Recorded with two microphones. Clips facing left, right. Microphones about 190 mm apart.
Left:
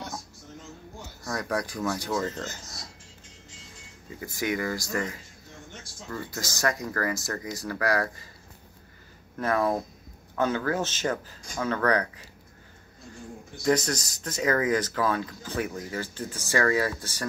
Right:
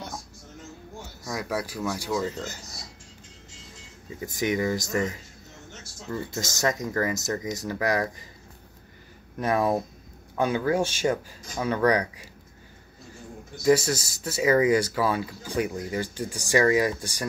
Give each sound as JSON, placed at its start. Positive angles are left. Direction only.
{"t": 1.2, "sound": "speech", "side_deg": -5}
{"t": 4.2, "sound": "speech", "side_deg": -20}
{"t": 9.4, "sound": "speech", "side_deg": -15}
{"t": 13.7, "sound": "speech", "side_deg": -10}